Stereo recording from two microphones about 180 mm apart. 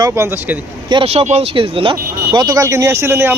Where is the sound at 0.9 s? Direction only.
35° right (ahead or behind).